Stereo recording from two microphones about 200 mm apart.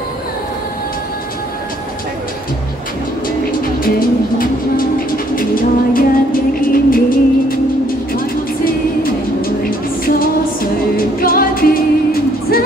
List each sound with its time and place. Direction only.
4.4 s train: 45° left (ahead or behind)
6.6 s vehicle: 45° left (ahead or behind)
8.6 s music: 45° left (ahead or behind)